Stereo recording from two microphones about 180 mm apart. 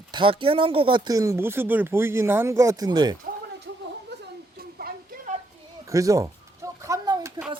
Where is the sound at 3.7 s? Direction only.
80° right.